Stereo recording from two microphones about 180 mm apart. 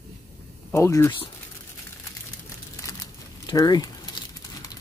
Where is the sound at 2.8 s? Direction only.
20° left (ahead or behind).